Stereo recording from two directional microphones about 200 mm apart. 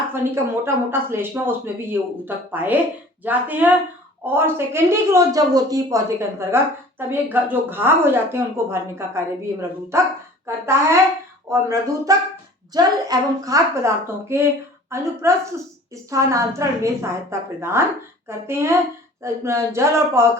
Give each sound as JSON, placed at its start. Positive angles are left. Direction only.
{"t": 0.1, "sound": "a woman's voice", "side_deg": -10}